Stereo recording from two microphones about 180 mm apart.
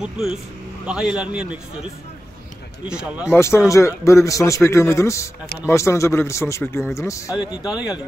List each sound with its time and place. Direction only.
0.0 s a man's voice: 5° right (ahead or behind)
2.9 s a man's voice: 5° right (ahead or behind)
3.3 s a man's voice: 15° left (ahead or behind)
7.3 s a man's voice: 5° right (ahead or behind)